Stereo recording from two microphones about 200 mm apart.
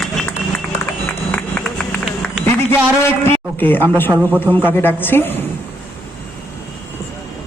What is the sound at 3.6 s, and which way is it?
A man's voice, 10° left (ahead or behind).